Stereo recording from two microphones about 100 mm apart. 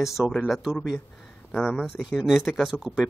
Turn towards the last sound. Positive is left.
turn(degrees=-5)  # may be behind; listen again after turning